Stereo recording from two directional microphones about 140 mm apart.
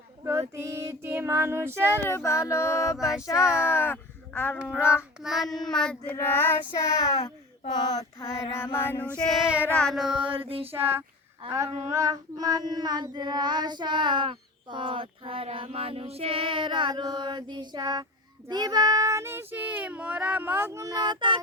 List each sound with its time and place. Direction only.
0.3 s child singing: 20° right (ahead or behind)
2.0 s a sound: 20° left (ahead or behind)
3.7 s speech: 15° left (ahead or behind)
4.5 s child singing: 10° right (ahead or behind)
6.1 s female singing: 15° left (ahead or behind)
6.7 s a sound: 25° left (ahead or behind)
8.2 s female singing: 20° left (ahead or behind)
9.2 s child singing: centre (ahead or behind)
9.7 s child singing: centre (ahead or behind)
10.2 s child singing: 40° right (ahead or behind)
11.4 s a sound: 45° right (ahead or behind)
11.9 s child singing: 25° right (ahead or behind)